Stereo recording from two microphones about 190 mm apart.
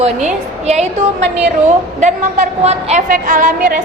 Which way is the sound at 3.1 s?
45° right (ahead or behind).